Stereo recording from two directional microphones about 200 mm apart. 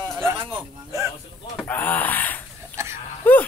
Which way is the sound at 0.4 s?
20° right (ahead or behind).